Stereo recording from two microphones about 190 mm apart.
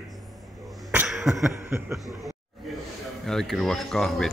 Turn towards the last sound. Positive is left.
turn(degrees=0)  # may be behind; listen again after turning